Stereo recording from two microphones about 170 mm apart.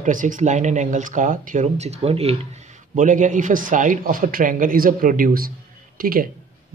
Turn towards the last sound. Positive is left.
turn(degrees=-55)  # may be behind; listen again after turning